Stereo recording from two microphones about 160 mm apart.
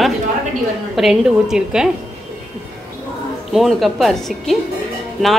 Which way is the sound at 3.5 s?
Centre (ahead or behind).